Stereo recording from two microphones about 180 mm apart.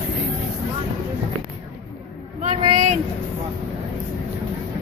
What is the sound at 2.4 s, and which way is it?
Speech, 30° right (ahead or behind).